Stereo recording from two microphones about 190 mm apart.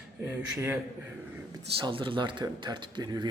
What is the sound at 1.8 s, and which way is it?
Speech, 25° right (ahead or behind).